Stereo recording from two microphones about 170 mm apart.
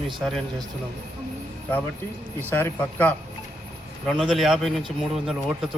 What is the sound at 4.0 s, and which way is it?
A man's voice, centre (ahead or behind).